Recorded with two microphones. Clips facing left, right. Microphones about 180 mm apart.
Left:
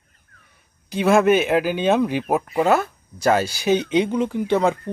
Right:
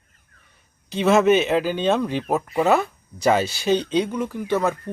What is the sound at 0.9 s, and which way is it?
Speech, 10° left (ahead or behind).